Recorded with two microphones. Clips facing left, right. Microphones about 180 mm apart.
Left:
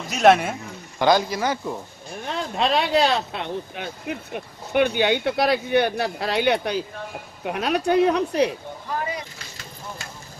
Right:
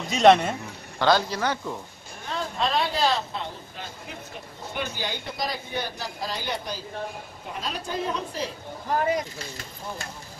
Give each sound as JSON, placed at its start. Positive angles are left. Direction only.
{"t": 0.1, "sound": "a man's voice", "side_deg": 5}
{"t": 2.2, "sound": "speech", "side_deg": 70}
{"t": 8.9, "sound": "speech", "side_deg": -45}